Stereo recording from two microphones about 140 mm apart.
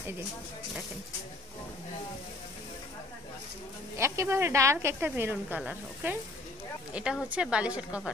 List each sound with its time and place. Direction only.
4.0 s a woman's voice: 20° right (ahead or behind)